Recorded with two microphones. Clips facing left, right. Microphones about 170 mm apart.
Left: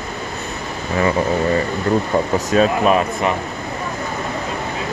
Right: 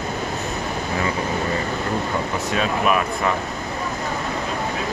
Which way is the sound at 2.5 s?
40° left (ahead or behind).